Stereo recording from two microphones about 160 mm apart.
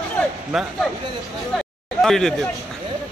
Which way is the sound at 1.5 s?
Centre (ahead or behind).